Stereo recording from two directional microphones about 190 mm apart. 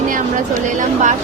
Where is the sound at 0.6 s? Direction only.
40° right (ahead or behind).